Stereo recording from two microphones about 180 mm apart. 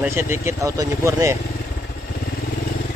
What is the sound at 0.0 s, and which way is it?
Speech, 15° right (ahead or behind).